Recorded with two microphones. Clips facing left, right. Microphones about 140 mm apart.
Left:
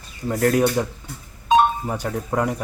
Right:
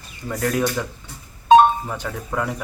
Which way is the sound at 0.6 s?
30° left (ahead or behind).